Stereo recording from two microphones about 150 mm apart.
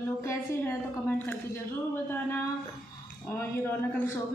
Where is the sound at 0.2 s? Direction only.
20° left (ahead or behind).